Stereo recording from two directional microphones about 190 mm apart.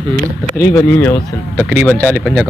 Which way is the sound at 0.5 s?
15° left (ahead or behind).